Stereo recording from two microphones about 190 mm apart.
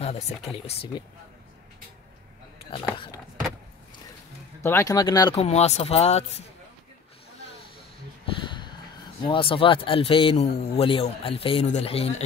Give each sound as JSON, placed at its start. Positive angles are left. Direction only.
{"t": 0.0, "sound": "speech", "side_deg": 30}
{"t": 4.6, "sound": "speech", "side_deg": 15}
{"t": 5.4, "sound": "speech", "side_deg": 35}
{"t": 8.4, "sound": "a sound", "side_deg": 25}
{"t": 9.2, "sound": "speech", "side_deg": 25}